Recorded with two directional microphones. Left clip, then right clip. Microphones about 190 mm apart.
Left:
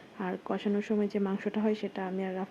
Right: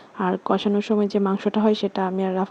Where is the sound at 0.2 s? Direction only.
35° right (ahead or behind).